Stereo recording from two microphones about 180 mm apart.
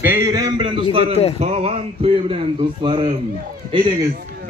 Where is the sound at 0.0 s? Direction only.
15° right (ahead or behind).